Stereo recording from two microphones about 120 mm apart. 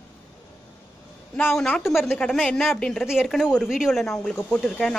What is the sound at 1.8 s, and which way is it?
Speech, centre (ahead or behind).